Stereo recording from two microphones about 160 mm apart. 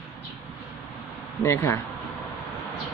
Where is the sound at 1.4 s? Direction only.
15° left (ahead or behind).